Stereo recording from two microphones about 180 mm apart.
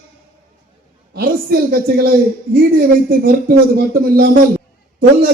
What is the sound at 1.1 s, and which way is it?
Speech, 55° right (ahead or behind).